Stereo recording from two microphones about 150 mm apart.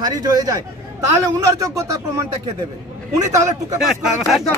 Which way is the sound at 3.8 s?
Centre (ahead or behind).